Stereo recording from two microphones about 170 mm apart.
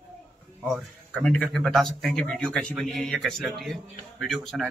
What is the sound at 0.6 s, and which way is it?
A man's voice, 5° left (ahead or behind).